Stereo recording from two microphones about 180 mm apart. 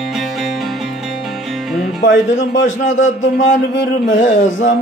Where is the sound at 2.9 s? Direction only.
45° left (ahead or behind).